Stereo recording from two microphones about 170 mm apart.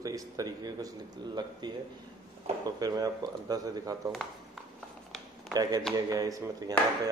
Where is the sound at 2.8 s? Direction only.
20° right (ahead or behind).